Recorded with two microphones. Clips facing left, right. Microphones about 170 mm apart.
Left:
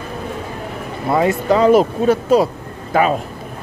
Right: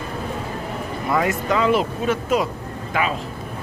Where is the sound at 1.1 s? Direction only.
30° left (ahead or behind).